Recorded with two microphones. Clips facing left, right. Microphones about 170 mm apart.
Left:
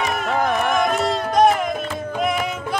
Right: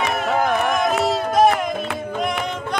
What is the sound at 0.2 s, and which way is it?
Music, centre (ahead or behind).